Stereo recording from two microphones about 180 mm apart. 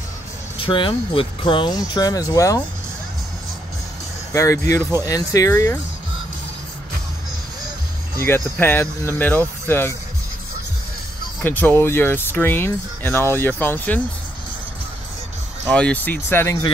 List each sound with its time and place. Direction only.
0.6 s speech: 30° left (ahead or behind)
4.3 s speech: 15° left (ahead or behind)
8.2 s speech: 10° left (ahead or behind)
11.4 s speech: 10° left (ahead or behind)
15.6 s speech: 5° left (ahead or behind)